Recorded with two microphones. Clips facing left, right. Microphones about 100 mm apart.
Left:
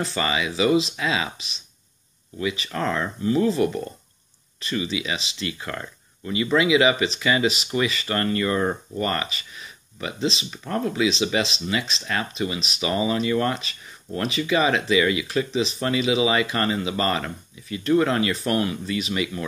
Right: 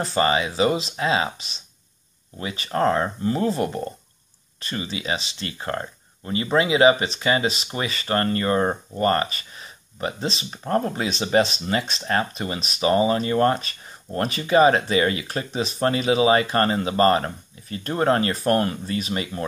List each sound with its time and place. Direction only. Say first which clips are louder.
0.0 s speech: right 4 dB; 40° right (ahead or behind)